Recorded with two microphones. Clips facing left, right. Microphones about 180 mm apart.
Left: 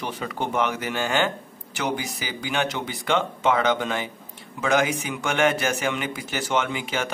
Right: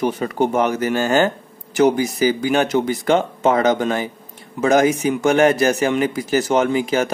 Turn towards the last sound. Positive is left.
turn(degrees=-40)  # may be behind; listen again after turning